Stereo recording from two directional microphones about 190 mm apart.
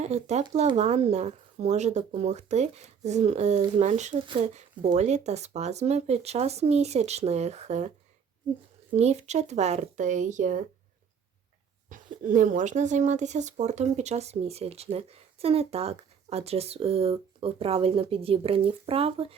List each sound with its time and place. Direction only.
0.0 s speech: 35° right (ahead or behind)
9.0 s speech: 35° right (ahead or behind)
11.9 s speech: 45° right (ahead or behind)